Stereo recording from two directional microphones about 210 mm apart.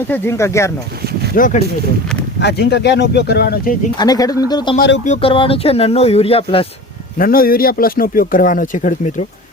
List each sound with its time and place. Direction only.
0.1 s speech: 10° left (ahead or behind)
1.4 s speech: 35° left (ahead or behind)
2.4 s speech: 55° left (ahead or behind)
3.9 s speech: 20° left (ahead or behind)
7.2 s speech: 45° left (ahead or behind)